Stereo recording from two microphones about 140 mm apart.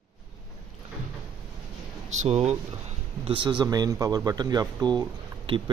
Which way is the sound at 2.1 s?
50° right (ahead or behind).